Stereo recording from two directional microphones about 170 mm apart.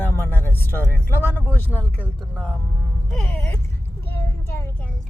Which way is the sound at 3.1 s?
5° left (ahead or behind).